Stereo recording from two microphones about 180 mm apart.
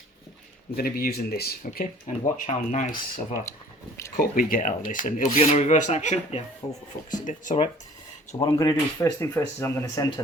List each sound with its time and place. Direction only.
0.8 s speech: 55° left (ahead or behind)
2.0 s speech: 40° left (ahead or behind)
4.2 s speech: 50° left (ahead or behind)
6.6 s speech: 20° left (ahead or behind)
7.3 s speech: 40° left (ahead or behind)
8.5 s speech: 20° left (ahead or behind)